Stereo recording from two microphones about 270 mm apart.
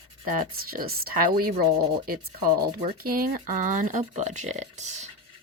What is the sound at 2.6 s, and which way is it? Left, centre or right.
Speech, right.